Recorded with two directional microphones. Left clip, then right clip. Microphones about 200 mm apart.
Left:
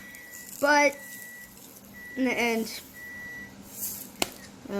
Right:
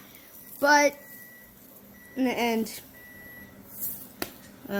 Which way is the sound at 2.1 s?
40° right (ahead or behind).